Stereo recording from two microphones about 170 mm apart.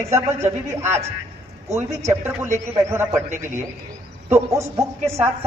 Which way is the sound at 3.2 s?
45° right (ahead or behind).